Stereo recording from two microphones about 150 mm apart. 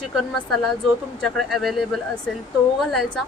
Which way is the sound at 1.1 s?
Centre (ahead or behind).